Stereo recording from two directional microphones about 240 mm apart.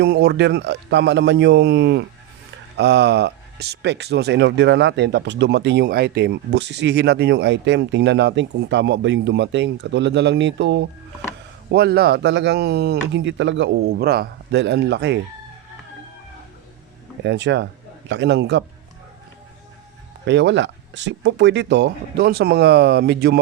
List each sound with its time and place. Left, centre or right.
0.0 s speech: right
17.2 s speech: right
20.2 s speech: right